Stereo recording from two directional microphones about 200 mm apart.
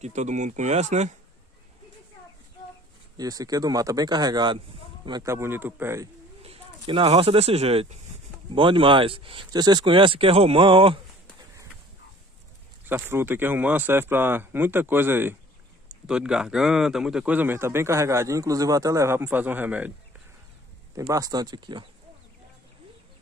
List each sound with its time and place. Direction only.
0.0 s speech: 35° right (ahead or behind)
3.2 s speech: 20° right (ahead or behind)
6.4 s speech: 25° right (ahead or behind)
12.8 s speech: 10° right (ahead or behind)
21.0 s speech: 20° right (ahead or behind)